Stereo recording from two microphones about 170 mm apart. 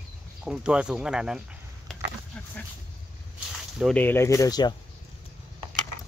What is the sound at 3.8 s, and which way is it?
Speech, 10° left (ahead or behind).